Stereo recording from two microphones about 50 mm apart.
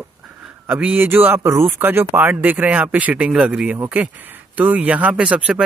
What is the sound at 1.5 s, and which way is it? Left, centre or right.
Speech, right.